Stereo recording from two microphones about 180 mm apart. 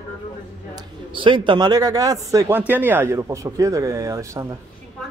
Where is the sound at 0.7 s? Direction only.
25° right (ahead or behind).